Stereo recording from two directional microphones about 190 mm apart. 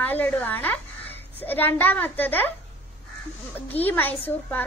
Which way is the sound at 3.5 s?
10° left (ahead or behind).